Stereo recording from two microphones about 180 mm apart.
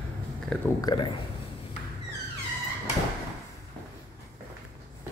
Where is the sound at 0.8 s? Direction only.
25° left (ahead or behind).